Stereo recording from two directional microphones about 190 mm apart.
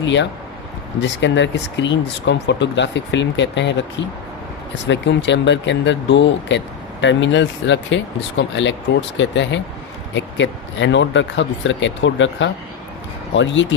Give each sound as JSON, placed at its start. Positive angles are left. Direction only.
{"t": 0.0, "sound": "speech", "side_deg": 70}